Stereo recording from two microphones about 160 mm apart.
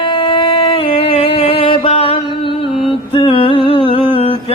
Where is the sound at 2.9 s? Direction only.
35° left (ahead or behind).